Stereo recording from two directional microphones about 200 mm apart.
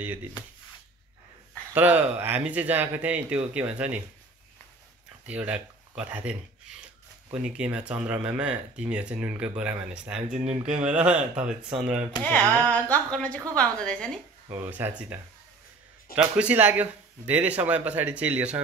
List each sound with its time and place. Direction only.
1.7 s speech: 10° right (ahead or behind)
5.3 s speech: 5° right (ahead or behind)
10.3 s speech: 35° right (ahead or behind)
10.7 s speech: 5° right (ahead or behind)
12.2 s speech: 5° left (ahead or behind)
14.5 s speech: 10° right (ahead or behind)
16.2 s speech: 5° right (ahead or behind)